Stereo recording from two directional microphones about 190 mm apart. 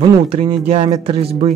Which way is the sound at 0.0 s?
30° right (ahead or behind).